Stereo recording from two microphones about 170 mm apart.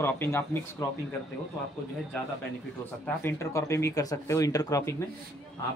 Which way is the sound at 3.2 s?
15° left (ahead or behind).